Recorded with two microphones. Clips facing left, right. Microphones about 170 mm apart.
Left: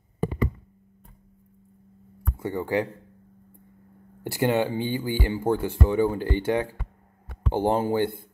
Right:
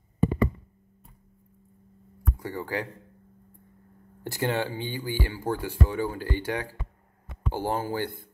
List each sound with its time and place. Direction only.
2.3 s speech: 20° left (ahead or behind)
4.2 s speech: 15° left (ahead or behind)